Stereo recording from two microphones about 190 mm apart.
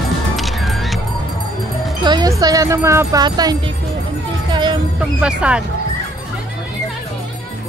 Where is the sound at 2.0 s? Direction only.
20° right (ahead or behind).